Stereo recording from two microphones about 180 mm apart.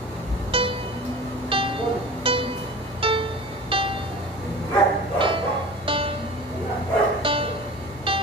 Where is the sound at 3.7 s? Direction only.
30° right (ahead or behind).